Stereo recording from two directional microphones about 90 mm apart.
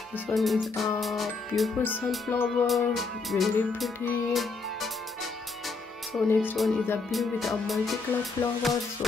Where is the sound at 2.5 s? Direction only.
5° left (ahead or behind).